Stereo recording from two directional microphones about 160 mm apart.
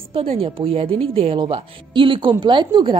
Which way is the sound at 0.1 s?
35° right (ahead or behind).